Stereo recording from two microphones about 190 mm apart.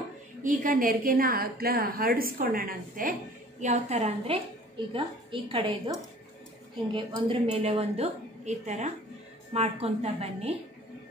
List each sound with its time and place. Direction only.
0.4 s a woman's voice: 45° right (ahead or behind)
3.6 s a woman's voice: 35° right (ahead or behind)
6.9 s a woman's voice: 25° right (ahead or behind)